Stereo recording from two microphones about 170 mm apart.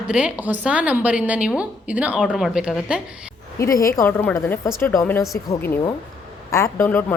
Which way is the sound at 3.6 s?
20° left (ahead or behind).